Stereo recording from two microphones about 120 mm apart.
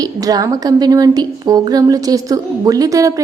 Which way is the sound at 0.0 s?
30° right (ahead or behind).